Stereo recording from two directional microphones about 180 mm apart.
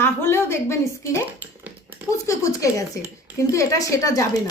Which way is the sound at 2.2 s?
15° left (ahead or behind).